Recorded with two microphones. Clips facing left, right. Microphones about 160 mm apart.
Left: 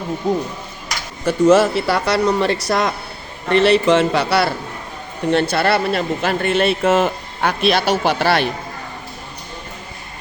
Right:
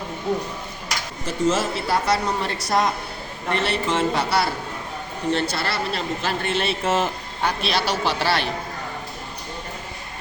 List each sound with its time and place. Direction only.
1.2 s speech: 70° left (ahead or behind)
5.3 s a man's voice: 60° left (ahead or behind)